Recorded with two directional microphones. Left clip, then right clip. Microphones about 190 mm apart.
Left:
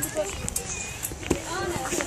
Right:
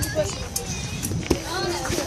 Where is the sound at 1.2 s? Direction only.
25° right (ahead or behind).